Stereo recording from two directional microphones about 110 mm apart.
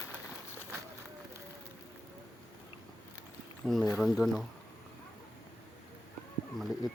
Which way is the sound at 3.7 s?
Centre (ahead or behind).